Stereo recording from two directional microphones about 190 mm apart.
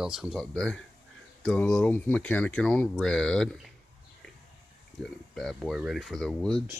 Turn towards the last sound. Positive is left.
turn(degrees=5)  # may be behind; listen again after turning